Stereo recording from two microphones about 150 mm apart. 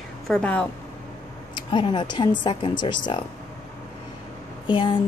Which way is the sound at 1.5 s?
30° left (ahead or behind).